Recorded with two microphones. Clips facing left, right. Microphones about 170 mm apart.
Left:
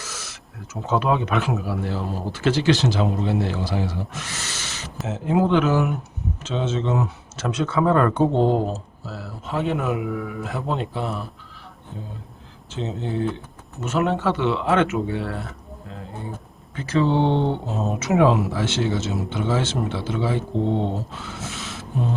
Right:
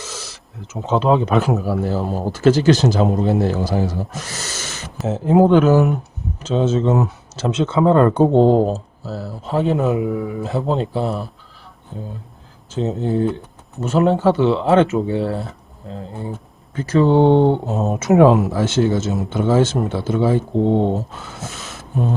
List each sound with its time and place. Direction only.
0.0 s speech: 30° right (ahead or behind); by 4.9 s 45° right (ahead or behind)
5.0 s speech: 35° right (ahead or behind)
7.4 s speech: 25° right (ahead or behind)
12.7 s speech: 40° right (ahead or behind)
16.7 s speech: 45° right (ahead or behind)